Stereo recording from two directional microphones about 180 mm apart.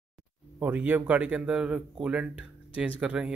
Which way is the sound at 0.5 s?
10° right (ahead or behind).